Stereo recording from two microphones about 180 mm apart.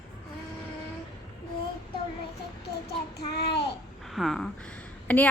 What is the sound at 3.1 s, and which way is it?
Child singing, 65° left (ahead or behind).